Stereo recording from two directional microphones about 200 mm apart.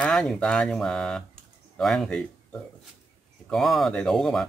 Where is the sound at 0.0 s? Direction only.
Centre (ahead or behind).